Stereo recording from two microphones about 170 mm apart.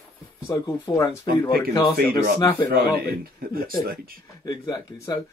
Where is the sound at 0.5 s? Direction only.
20° left (ahead or behind).